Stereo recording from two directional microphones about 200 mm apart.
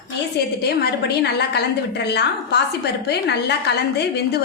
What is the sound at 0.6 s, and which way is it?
A woman's voice, 55° left (ahead or behind).